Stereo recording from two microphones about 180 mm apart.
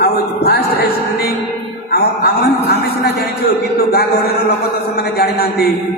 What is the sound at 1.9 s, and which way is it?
A man's voice, 60° left (ahead or behind).